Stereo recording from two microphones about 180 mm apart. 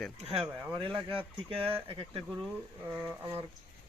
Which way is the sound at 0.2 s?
35° right (ahead or behind).